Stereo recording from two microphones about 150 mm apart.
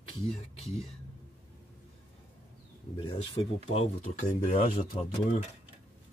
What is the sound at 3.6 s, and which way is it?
Speech, 45° left (ahead or behind).